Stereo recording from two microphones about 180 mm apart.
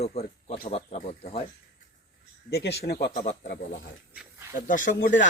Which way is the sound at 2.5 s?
65° left (ahead or behind).